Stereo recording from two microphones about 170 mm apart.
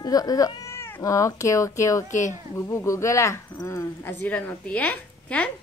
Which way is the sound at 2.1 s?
45° left (ahead or behind).